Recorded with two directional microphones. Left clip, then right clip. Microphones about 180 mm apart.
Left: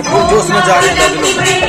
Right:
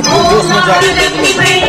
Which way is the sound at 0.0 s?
50° left (ahead or behind).